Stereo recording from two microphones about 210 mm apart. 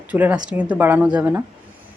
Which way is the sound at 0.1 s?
5° right (ahead or behind).